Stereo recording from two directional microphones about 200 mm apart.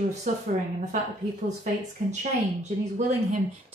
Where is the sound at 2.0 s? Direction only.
40° right (ahead or behind).